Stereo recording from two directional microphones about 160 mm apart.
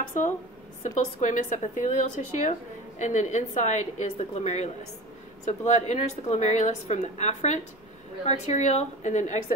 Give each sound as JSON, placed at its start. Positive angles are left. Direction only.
{"t": 0.0, "sound": "a woman's voice", "side_deg": 50}